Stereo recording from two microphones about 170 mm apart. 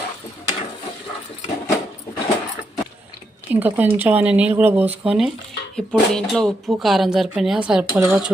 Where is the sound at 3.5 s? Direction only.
10° right (ahead or behind).